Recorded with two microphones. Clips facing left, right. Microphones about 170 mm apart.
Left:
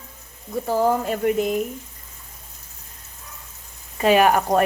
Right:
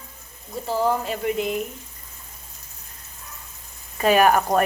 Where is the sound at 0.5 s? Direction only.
50° left (ahead or behind).